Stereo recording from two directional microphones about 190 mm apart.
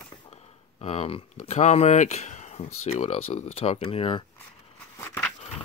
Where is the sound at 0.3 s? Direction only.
35° left (ahead or behind).